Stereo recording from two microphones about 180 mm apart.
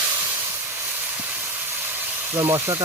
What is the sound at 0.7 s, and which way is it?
Speech, 10° right (ahead or behind).